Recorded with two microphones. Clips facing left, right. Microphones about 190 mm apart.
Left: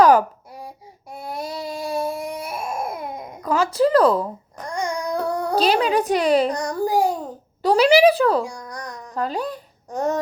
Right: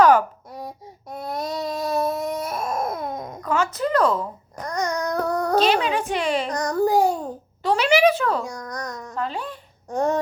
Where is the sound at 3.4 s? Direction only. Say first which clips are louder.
Left 5 dB; 35° left (ahead or behind).